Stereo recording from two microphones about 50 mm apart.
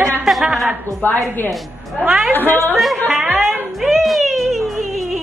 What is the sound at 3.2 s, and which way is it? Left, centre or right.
Speech, centre.